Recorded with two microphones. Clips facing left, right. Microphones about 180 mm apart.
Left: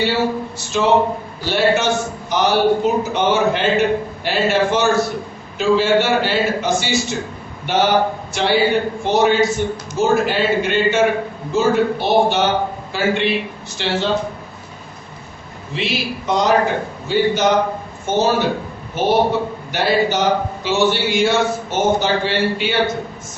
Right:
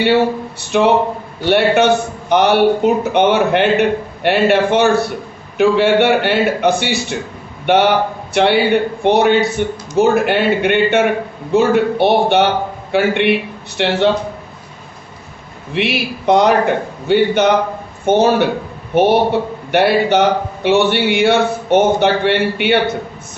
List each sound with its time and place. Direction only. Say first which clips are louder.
0.7 s a man's voice: right 3 dB; 65° right (ahead or behind)
15.7 s a man's voice: right 4 dB; 60° right (ahead or behind)